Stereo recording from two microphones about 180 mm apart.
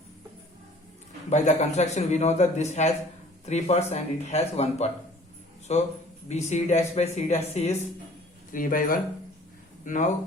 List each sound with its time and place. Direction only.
1.3 s speech: 40° left (ahead or behind)
8.5 s speech: 50° left (ahead or behind)